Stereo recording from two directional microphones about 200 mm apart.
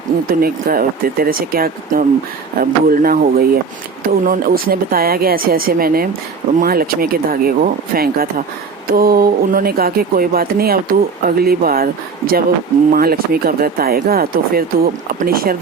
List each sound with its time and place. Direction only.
0.3 s speech: 50° right (ahead or behind)